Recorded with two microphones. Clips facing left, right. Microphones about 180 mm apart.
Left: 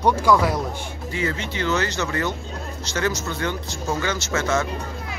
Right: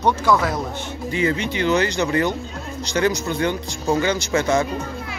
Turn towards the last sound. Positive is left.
turn(degrees=-15)  # may be behind; listen again after turning